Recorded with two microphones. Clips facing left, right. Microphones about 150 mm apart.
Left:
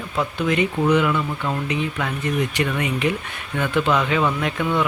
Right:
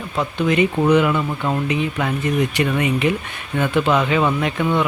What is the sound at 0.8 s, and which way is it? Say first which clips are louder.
Speech: right 1 dB; 25° right (ahead or behind).